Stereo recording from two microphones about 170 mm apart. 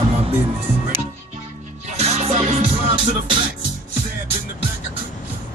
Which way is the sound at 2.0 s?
40° right (ahead or behind).